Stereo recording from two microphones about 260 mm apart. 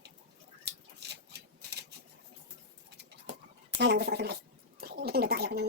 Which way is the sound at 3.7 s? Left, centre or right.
Right.